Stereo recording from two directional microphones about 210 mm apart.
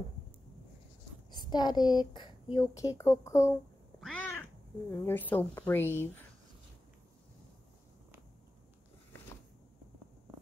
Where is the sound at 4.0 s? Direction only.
5° left (ahead or behind).